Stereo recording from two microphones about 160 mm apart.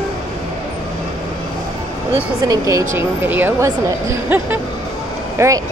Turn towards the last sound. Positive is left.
turn(degrees=-15)  # may be behind; listen again after turning